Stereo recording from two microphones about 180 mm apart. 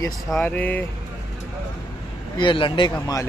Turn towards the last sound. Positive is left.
turn(degrees=25)  # may be behind; listen again after turning